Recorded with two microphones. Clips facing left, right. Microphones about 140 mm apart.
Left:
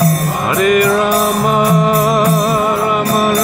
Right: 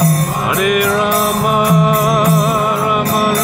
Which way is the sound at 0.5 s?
5° right (ahead or behind).